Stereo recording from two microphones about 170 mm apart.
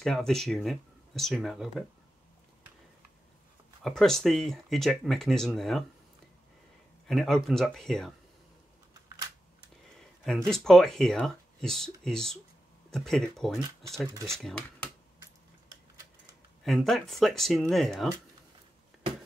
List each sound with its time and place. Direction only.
0.0 s speech: 5° left (ahead or behind)
3.8 s speech: centre (ahead or behind)
7.1 s speech: centre (ahead or behind)
10.2 s speech: 5° left (ahead or behind)
14.1 s speech: 15° right (ahead or behind)
14.4 s speech: 5° left (ahead or behind)
16.6 s speech: centre (ahead or behind)